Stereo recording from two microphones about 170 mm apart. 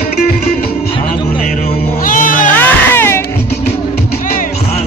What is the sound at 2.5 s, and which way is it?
Music, 10° left (ahead or behind).